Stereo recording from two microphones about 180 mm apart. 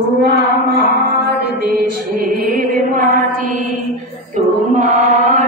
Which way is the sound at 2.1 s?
50° right (ahead or behind).